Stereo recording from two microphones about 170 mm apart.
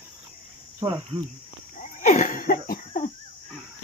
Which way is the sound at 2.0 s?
50° left (ahead or behind).